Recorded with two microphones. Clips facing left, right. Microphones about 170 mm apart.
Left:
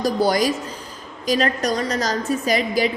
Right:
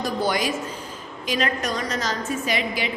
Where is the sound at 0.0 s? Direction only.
35° left (ahead or behind).